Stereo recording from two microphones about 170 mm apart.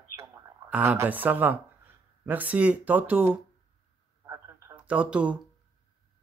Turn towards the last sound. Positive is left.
turn(degrees=-5)  # may be behind; listen again after turning